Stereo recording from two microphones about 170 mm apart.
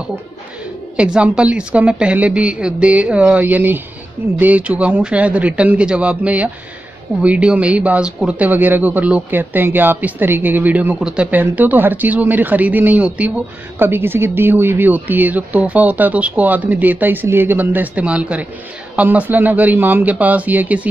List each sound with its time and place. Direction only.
0.9 s speech: 5° right (ahead or behind)